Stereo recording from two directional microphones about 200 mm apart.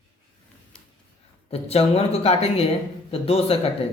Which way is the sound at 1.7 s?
30° left (ahead or behind).